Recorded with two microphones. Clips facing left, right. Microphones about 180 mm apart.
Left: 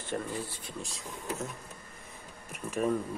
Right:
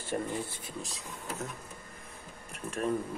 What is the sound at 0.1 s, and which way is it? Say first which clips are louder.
Speech: right 2 dB; 20° right (ahead or behind).